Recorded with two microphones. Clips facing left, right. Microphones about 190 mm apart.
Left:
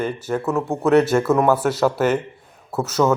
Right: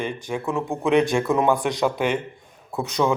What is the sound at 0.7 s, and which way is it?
Speech, 5° left (ahead or behind).